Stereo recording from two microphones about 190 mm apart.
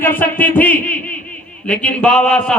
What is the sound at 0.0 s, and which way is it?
A man's voice, 10° left (ahead or behind).